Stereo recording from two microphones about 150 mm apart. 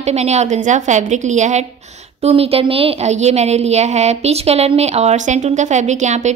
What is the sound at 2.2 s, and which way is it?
A woman's voice, 40° right (ahead or behind).